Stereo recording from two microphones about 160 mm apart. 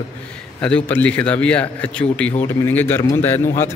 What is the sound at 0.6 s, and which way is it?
A man's voice, 10° left (ahead or behind).